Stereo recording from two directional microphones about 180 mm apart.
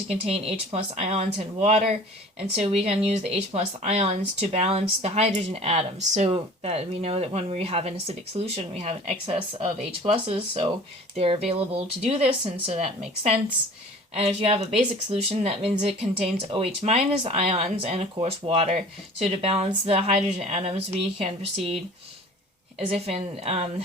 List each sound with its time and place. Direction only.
0.1 s speech: 35° right (ahead or behind)
12.0 s speech: 35° right (ahead or behind)
14.2 s speech: 35° right (ahead or behind)
22.9 s speech: 35° right (ahead or behind)